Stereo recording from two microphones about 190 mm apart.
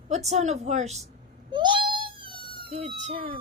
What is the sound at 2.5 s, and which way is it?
Speech, 30° right (ahead or behind).